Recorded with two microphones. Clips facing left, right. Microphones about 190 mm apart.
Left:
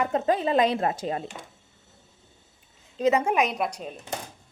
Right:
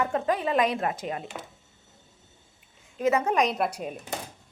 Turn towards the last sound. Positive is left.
turn(degrees=-10)  # may be behind; listen again after turning